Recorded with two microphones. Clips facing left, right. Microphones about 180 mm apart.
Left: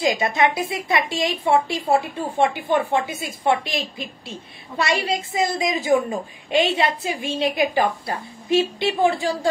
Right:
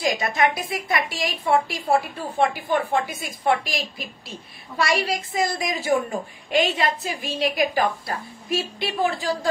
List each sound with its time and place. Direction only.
0.0 s a woman's voice: 25° left (ahead or behind)